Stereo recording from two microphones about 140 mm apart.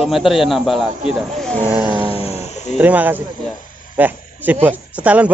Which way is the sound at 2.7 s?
10° right (ahead or behind).